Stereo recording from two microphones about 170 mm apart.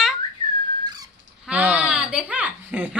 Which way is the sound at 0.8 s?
25° right (ahead or behind).